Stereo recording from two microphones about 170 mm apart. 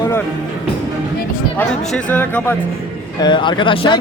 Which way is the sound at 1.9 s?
10° left (ahead or behind).